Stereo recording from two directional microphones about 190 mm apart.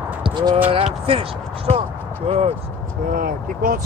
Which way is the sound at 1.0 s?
30° right (ahead or behind).